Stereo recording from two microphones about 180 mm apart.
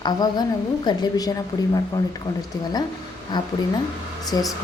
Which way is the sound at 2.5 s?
20° left (ahead or behind).